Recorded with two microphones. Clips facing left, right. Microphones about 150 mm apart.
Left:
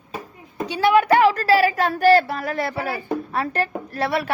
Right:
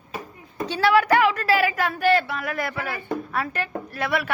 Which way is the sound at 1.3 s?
35° left (ahead or behind).